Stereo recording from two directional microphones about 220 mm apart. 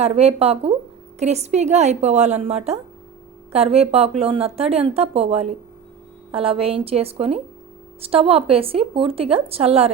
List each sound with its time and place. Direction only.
0.0 s a woman's voice: 30° right (ahead or behind)